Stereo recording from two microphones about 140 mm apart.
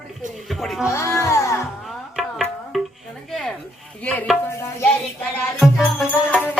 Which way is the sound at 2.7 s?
5° right (ahead or behind).